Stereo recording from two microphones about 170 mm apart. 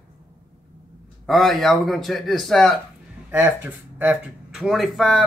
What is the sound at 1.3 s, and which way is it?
Speech, centre (ahead or behind).